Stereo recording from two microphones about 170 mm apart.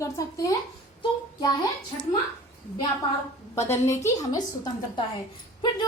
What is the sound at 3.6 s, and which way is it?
Speech, 15° left (ahead or behind).